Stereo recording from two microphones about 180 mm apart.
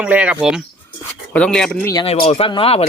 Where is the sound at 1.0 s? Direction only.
10° left (ahead or behind).